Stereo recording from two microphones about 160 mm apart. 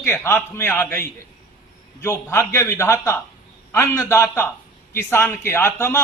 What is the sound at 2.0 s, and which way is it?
A man's voice, 15° left (ahead or behind).